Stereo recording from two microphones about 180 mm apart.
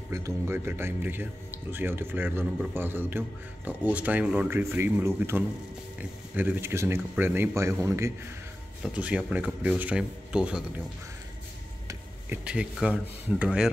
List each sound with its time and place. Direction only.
0.1 s speech: 15° right (ahead or behind)
8.8 s speech: 5° right (ahead or behind)
11.9 s speech: 10° right (ahead or behind)